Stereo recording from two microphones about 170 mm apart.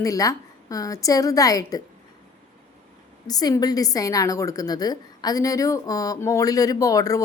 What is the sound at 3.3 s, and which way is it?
A woman's voice, 20° left (ahead or behind).